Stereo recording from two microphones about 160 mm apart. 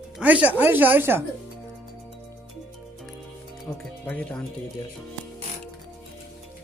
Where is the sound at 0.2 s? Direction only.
10° right (ahead or behind).